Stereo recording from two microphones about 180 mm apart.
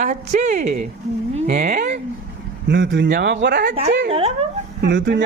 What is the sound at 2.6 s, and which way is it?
Speech, 90° right.